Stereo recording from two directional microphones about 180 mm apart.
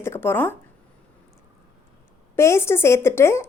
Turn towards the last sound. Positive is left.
turn(degrees=15)  # may be behind; listen again after turning